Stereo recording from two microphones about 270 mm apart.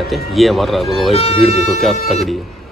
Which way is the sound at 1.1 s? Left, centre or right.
Left.